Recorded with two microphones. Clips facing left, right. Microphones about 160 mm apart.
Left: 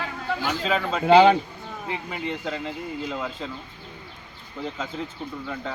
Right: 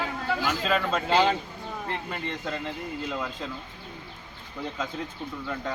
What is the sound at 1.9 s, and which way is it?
A man's voice, 5° left (ahead or behind).